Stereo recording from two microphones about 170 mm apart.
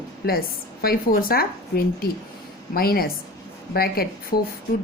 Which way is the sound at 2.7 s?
60° left (ahead or behind).